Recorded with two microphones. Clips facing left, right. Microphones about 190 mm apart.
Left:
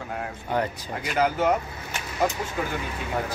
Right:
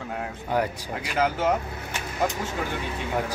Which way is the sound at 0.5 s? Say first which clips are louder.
Right 1 dB; 10° right (ahead or behind).